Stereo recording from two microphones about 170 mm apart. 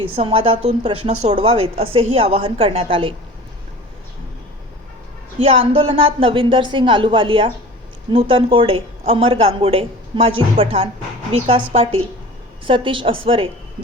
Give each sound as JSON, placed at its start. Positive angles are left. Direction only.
{"t": 0.0, "sound": "speech", "side_deg": -30}
{"t": 5.4, "sound": "speech", "side_deg": -35}